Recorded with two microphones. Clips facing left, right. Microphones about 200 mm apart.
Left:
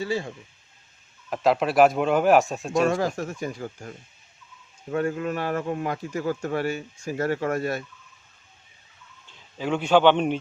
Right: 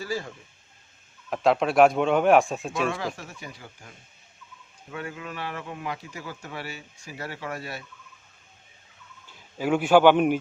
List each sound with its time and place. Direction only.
0.0 s speech: 25° left (ahead or behind)
1.3 s a man's voice: centre (ahead or behind)
2.9 s speech: 45° left (ahead or behind)
9.2 s a man's voice: 10° right (ahead or behind)